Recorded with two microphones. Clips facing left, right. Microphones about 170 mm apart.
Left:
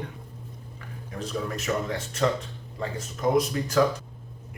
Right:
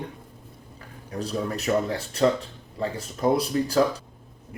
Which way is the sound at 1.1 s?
35° right (ahead or behind).